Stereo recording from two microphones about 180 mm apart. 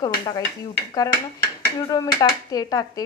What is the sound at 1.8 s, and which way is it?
A woman's voice, 20° left (ahead or behind).